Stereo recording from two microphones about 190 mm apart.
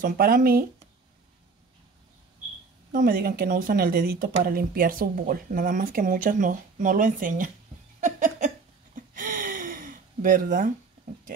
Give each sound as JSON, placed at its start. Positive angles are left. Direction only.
{"t": 0.0, "sound": "speech", "side_deg": -50}
{"t": 2.9, "sound": "speech", "side_deg": -45}
{"t": 8.0, "sound": "a sound", "side_deg": -40}